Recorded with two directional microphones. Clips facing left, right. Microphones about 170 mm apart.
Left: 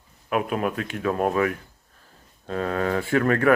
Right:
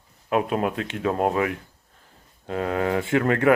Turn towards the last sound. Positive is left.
turn(degrees=-20)  # may be behind; listen again after turning